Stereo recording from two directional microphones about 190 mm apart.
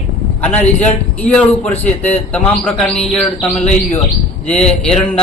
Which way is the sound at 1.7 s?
35° left (ahead or behind).